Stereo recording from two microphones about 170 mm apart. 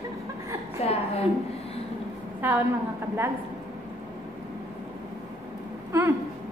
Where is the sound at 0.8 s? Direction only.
35° left (ahead or behind).